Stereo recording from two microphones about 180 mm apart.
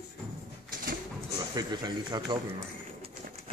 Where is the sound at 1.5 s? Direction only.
20° right (ahead or behind).